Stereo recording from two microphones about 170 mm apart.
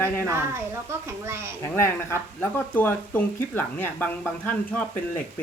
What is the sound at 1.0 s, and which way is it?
Speech, 15° right (ahead or behind).